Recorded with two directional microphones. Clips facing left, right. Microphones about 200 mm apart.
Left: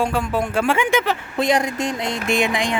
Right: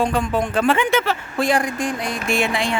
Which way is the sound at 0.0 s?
5° left (ahead or behind).